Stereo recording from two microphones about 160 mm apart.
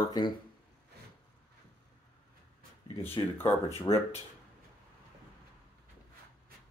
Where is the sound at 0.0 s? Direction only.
25° left (ahead or behind).